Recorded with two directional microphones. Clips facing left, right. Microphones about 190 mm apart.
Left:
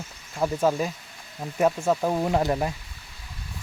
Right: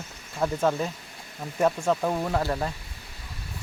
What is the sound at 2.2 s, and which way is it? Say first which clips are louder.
Speech: left 3 dB; 20° left (ahead or behind).